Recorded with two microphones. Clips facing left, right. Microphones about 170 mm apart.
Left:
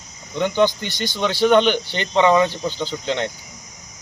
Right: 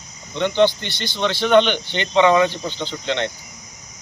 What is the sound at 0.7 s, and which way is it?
Speech, 40° left (ahead or behind).